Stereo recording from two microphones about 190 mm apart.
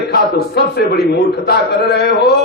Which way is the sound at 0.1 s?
60° left (ahead or behind).